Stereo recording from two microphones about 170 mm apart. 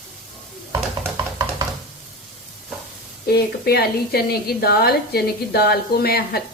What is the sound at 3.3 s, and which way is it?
A woman's voice, 70° left (ahead or behind).